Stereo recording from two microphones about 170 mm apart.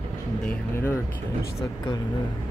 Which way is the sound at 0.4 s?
10° left (ahead or behind).